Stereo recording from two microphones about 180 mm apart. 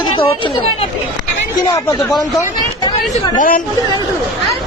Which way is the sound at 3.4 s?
50° left (ahead or behind).